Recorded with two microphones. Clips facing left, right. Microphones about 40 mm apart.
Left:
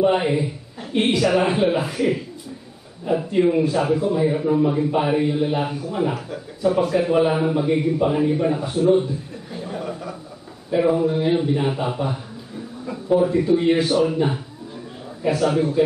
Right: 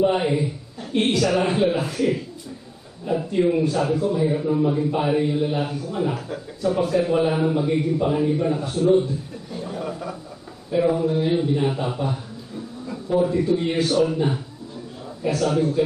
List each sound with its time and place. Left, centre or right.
0.0 s a man's voice: centre
6.1 s a man's voice: centre
9.5 s chuckle: centre
10.7 s a man's voice: centre